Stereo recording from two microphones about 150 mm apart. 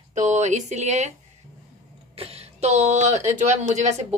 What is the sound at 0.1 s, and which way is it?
Speech, 55° right (ahead or behind).